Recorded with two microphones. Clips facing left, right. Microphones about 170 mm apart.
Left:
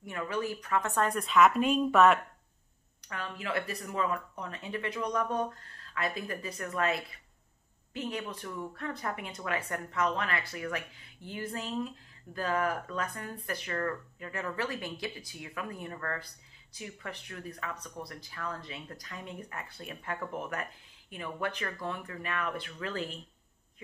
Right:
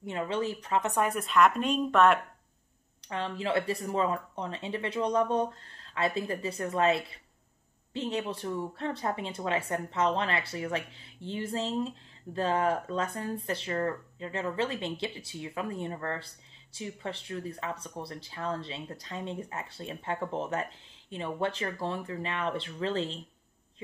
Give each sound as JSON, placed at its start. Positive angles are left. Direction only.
{"t": 0.0, "sound": "speech", "side_deg": -25}
{"t": 3.1, "sound": "speech", "side_deg": -30}